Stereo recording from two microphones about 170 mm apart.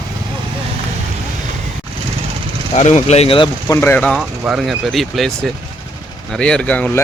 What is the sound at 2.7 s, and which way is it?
Speech, 40° left (ahead or behind).